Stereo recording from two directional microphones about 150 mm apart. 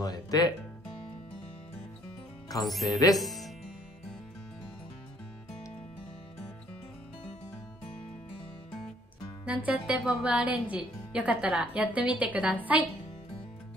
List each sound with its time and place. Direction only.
0.0 s music: 25° left (ahead or behind)
2.6 s speech: centre (ahead or behind)
2.9 s speech: 25° left (ahead or behind)
3.2 s music: centre (ahead or behind)
9.5 s a woman's voice: 10° right (ahead or behind)